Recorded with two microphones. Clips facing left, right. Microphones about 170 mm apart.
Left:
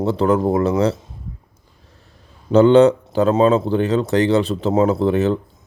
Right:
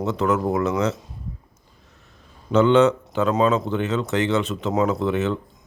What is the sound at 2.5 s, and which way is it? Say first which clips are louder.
Speech: left 5 dB; 35° left (ahead or behind).